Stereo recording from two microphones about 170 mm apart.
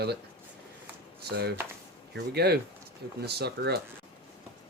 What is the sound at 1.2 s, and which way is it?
Speech, 70° right (ahead or behind).